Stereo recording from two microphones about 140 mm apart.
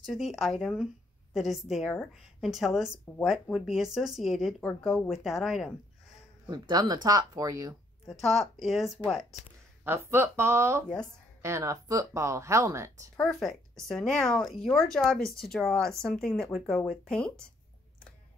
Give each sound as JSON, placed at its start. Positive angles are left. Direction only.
{"t": 0.0, "sound": "speech", "side_deg": 0}
{"t": 6.4, "sound": "speech", "side_deg": -30}
{"t": 8.1, "sound": "speech", "side_deg": 0}
{"t": 9.8, "sound": "speech", "side_deg": -15}
{"t": 13.1, "sound": "speech", "side_deg": 0}